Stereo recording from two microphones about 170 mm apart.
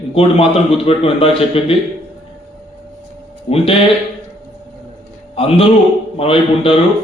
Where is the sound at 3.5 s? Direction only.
35° left (ahead or behind).